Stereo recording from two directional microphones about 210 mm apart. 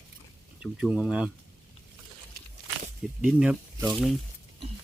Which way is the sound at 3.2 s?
5° right (ahead or behind).